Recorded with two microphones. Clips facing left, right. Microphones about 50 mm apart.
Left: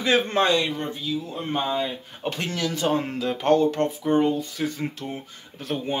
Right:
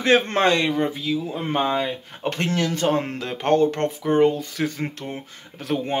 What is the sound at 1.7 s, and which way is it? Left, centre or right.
Speech, right.